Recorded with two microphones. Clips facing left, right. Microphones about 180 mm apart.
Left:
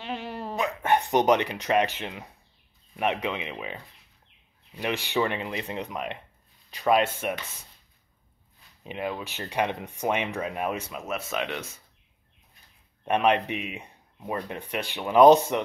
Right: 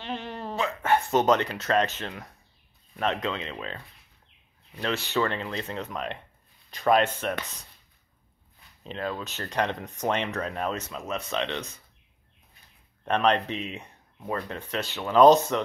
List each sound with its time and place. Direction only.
0.0 s speech: 5° left (ahead or behind)
8.8 s speech: 15° left (ahead or behind)
13.0 s speech: 10° left (ahead or behind)